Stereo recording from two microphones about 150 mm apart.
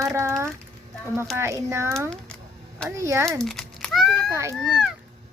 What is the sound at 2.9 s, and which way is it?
Speech, 20° right (ahead or behind).